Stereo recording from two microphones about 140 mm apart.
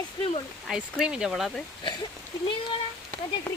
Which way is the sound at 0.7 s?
5° right (ahead or behind).